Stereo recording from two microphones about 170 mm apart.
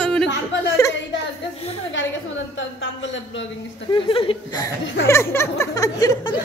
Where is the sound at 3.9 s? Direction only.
30° left (ahead or behind).